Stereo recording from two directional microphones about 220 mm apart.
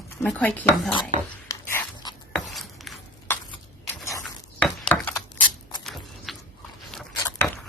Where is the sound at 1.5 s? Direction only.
15° left (ahead or behind).